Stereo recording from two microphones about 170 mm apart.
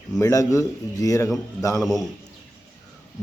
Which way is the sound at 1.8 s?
Centre (ahead or behind).